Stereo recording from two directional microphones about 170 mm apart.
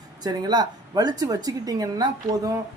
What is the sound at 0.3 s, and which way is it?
Speech, 25° right (ahead or behind).